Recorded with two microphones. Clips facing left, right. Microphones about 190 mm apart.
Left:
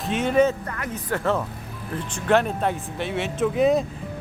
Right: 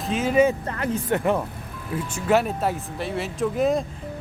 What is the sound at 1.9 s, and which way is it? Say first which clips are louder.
Speech: even; 5° right (ahead or behind).